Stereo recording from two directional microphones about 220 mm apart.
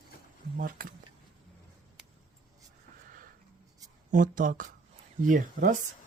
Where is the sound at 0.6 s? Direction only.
40° right (ahead or behind).